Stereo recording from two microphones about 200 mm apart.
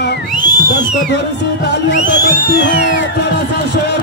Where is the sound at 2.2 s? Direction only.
55° left (ahead or behind).